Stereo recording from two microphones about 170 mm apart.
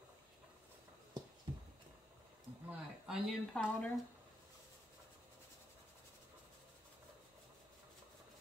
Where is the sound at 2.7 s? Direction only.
5° right (ahead or behind).